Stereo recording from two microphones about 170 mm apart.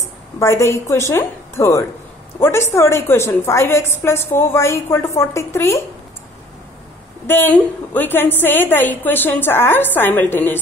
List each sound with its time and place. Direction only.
0.4 s a woman's voice: 15° left (ahead or behind)
7.2 s a woman's voice: 10° left (ahead or behind)